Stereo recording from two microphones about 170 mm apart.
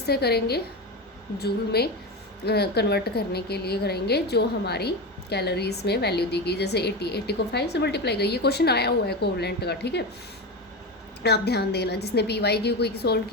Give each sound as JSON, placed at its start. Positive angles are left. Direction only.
{"t": 0.0, "sound": "a woman's voice", "side_deg": 70}
{"t": 11.2, "sound": "a woman's voice", "side_deg": 75}